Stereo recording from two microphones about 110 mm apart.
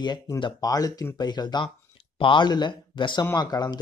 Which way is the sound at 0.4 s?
40° left (ahead or behind).